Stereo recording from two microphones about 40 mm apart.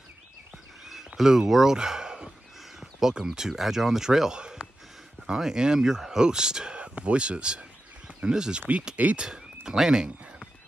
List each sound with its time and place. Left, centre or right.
0.8 s a sound: centre
3.2 s speech: centre
4.4 s speech: right
8.9 s speech: right
9.2 s speech: centre